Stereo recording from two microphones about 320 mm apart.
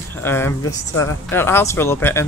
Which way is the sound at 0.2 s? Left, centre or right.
Centre.